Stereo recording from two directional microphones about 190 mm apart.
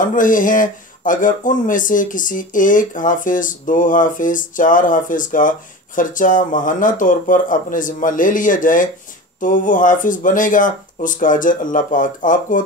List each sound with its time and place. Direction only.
0.0 s speech: 45° left (ahead or behind)